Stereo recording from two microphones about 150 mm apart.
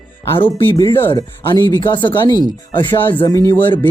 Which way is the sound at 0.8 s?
30° left (ahead or behind).